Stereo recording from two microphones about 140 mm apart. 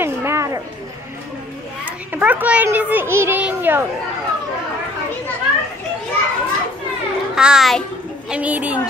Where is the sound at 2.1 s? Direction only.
10° right (ahead or behind).